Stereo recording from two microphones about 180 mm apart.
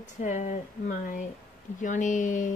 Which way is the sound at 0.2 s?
45° left (ahead or behind).